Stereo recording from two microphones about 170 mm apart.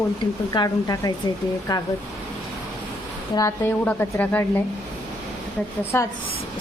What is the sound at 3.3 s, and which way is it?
A woman's voice, 20° left (ahead or behind).